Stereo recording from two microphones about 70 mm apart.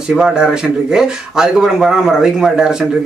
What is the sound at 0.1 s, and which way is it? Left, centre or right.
Speech, centre.